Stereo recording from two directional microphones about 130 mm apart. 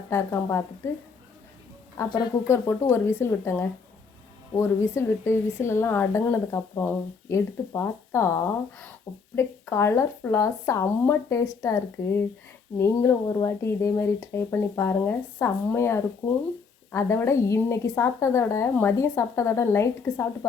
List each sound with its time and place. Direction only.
0.1 s speech: 20° left (ahead or behind)
2.0 s speech: 20° left (ahead or behind)